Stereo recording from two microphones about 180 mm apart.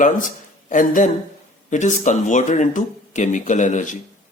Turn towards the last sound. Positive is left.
turn(degrees=45)  # may be behind; listen again after turning